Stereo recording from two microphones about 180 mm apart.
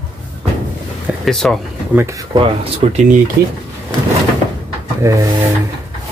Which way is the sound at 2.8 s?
35° right (ahead or behind).